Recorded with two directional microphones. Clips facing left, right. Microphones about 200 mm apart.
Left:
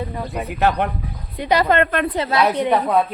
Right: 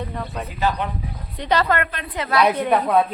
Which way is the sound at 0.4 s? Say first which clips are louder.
Left 5 dB; 65° left (ahead or behind).